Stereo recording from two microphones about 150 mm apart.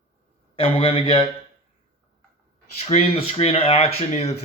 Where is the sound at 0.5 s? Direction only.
40° left (ahead or behind).